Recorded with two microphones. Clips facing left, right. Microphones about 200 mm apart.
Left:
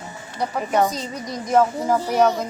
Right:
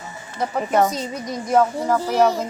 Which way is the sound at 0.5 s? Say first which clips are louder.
Right 2 dB; centre (ahead or behind).